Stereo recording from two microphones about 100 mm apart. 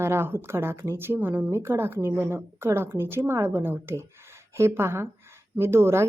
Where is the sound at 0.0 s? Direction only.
25° right (ahead or behind).